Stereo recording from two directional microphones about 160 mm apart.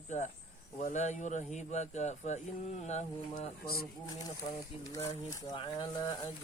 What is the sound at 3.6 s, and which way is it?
Speech, 75° left (ahead or behind).